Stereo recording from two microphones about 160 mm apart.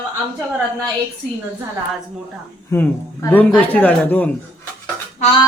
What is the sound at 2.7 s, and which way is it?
A man's voice, 15° left (ahead or behind).